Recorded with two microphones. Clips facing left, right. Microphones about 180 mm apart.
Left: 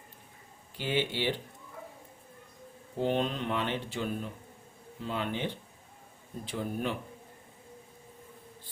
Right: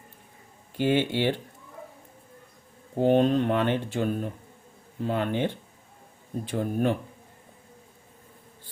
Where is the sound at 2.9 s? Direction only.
50° right (ahead or behind).